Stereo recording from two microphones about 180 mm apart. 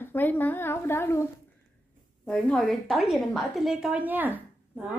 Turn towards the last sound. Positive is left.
turn(degrees=-10)  # may be behind; listen again after turning